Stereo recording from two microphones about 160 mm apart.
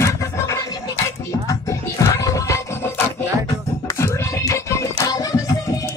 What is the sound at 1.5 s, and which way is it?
Music, 20° left (ahead or behind).